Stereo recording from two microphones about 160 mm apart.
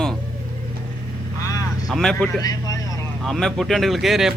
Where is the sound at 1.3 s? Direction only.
20° left (ahead or behind).